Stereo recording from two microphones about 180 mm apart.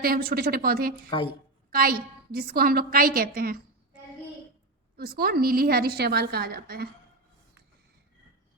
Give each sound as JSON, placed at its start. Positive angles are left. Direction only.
{"t": 0.0, "sound": "a woman's voice", "side_deg": -55}
{"t": 4.9, "sound": "a woman's voice", "side_deg": -60}